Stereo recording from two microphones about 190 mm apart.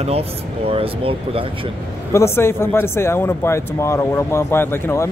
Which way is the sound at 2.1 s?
15° left (ahead or behind).